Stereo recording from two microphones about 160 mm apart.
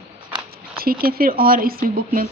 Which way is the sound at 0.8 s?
70° right (ahead or behind).